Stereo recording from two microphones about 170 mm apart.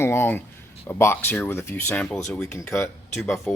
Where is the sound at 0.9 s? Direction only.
15° left (ahead or behind).